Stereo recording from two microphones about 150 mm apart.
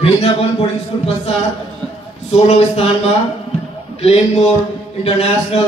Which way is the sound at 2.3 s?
45° left (ahead or behind).